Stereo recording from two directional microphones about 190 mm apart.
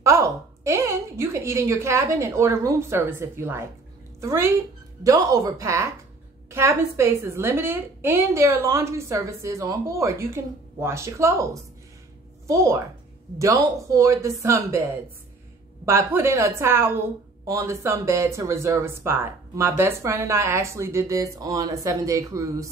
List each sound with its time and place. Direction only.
0.0 s a woman's voice: 15° right (ahead or behind)
12.4 s speech: 15° right (ahead or behind)